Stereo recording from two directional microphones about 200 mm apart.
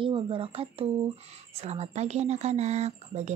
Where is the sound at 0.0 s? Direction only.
25° right (ahead or behind).